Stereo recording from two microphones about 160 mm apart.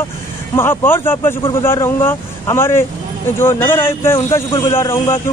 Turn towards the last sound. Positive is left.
turn(degrees=15)  # may be behind; listen again after turning